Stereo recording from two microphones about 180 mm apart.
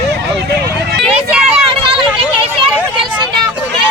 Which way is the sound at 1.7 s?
30° right (ahead or behind).